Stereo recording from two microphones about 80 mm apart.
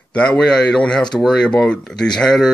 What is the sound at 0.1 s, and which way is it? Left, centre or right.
Speech, centre.